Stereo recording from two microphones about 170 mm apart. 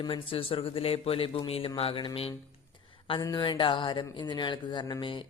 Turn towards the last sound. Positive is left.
turn(degrees=30)  # may be behind; listen again after turning